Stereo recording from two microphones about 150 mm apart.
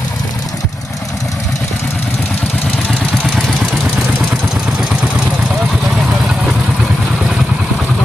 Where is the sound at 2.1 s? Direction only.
10° left (ahead or behind).